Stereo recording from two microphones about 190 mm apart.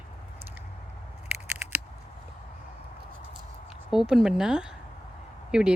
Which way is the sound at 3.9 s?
Centre (ahead or behind).